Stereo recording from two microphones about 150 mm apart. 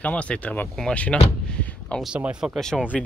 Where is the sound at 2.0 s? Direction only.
5° right (ahead or behind).